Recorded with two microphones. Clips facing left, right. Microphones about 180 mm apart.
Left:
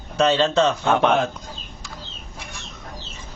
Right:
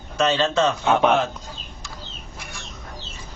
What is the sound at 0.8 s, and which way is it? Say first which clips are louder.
Speech: even; 5° right (ahead or behind).